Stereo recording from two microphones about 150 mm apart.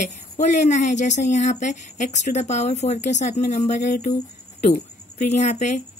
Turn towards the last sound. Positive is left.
turn(degrees=50)  # may be behind; listen again after turning